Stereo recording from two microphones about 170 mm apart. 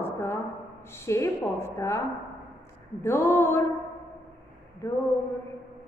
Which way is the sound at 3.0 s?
15° left (ahead or behind).